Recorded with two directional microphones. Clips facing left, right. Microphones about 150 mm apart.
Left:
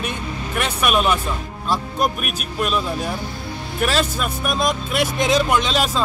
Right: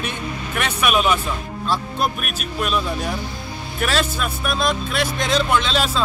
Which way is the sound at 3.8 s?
Centre (ahead or behind).